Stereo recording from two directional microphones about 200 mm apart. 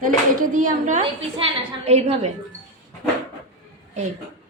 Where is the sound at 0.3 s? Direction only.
40° right (ahead or behind).